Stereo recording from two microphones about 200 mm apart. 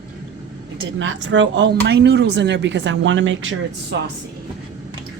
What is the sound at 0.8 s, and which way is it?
Speech, 70° right (ahead or behind).